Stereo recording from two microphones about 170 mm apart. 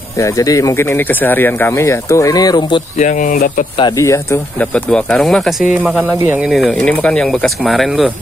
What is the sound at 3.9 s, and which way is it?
Speech, 15° left (ahead or behind).